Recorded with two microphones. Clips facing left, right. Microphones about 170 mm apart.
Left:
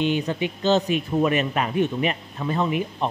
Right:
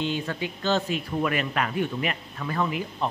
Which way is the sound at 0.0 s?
20° left (ahead or behind).